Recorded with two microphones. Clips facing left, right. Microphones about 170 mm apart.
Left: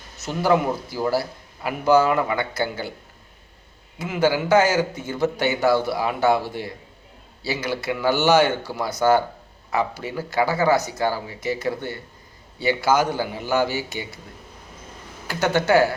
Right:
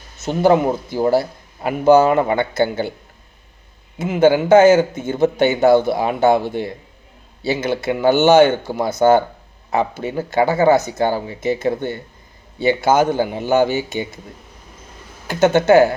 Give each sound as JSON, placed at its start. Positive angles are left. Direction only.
{"t": 0.2, "sound": "a man's voice", "side_deg": -25}
{"t": 3.9, "sound": "a man's voice", "side_deg": -25}
{"t": 15.3, "sound": "a man's voice", "side_deg": -20}